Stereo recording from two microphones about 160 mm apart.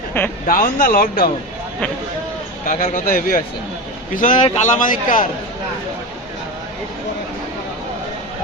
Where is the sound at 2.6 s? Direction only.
60° left (ahead or behind).